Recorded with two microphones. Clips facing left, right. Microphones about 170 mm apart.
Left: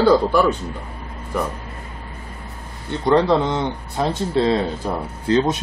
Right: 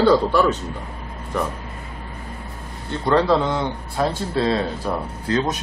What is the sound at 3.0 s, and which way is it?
A man's voice, 20° left (ahead or behind).